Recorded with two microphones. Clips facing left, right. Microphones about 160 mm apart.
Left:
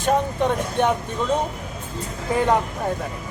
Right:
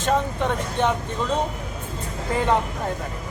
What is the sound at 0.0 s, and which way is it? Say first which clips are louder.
Speech: left 2 dB; 15° left (ahead or behind).